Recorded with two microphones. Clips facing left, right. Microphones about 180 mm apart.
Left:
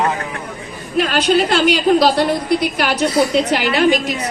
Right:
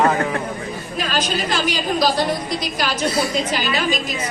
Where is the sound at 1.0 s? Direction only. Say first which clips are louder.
Left 9 dB; 65° left (ahead or behind).